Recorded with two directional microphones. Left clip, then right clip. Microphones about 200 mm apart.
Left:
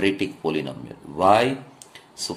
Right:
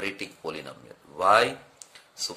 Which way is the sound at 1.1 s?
20° right (ahead or behind).